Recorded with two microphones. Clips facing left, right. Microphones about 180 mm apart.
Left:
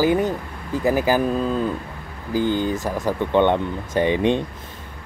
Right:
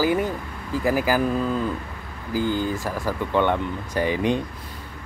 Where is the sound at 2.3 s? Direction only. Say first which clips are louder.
Left 3 dB; 20° left (ahead or behind).